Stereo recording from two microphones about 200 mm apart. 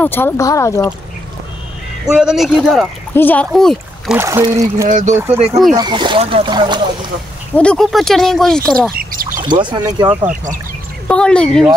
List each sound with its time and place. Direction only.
0.0 s speech: 10° left (ahead or behind)
2.0 s speech: 5° right (ahead or behind)
4.2 s speech: 15° right (ahead or behind)
4.8 s speech: 40° right (ahead or behind)
5.1 s speech: 10° right (ahead or behind)
5.8 s speech: 20° right (ahead or behind)
7.5 s speech: 5° left (ahead or behind)
8.9 s bird: 45° right (ahead or behind)
9.4 s speech: 25° right (ahead or behind)
11.1 s speech: 5° left (ahead or behind)